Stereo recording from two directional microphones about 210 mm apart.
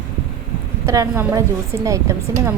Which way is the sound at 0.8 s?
15° right (ahead or behind).